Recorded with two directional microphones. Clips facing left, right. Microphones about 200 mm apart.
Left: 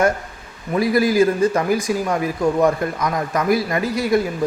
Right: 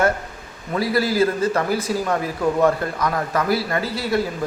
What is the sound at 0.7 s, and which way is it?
Speech, 15° left (ahead or behind).